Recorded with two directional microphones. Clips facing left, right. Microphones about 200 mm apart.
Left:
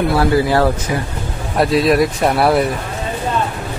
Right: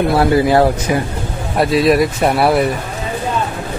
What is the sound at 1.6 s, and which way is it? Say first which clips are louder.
Speech: right 1 dB; centre (ahead or behind).